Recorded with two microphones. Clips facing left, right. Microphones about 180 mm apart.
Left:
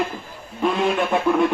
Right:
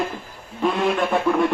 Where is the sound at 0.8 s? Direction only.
Centre (ahead or behind).